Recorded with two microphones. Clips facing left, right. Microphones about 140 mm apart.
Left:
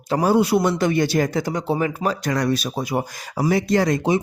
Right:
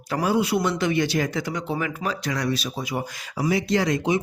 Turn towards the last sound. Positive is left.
turn(degrees=45)  # may be behind; listen again after turning